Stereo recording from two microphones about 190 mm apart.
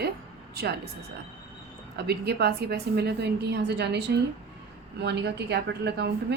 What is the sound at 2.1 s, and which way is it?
A woman's voice, 60° right (ahead or behind).